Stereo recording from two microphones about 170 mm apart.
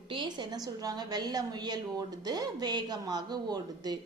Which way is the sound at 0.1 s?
30° right (ahead or behind).